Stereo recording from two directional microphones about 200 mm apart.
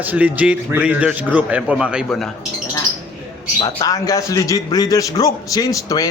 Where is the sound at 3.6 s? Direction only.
20° left (ahead or behind).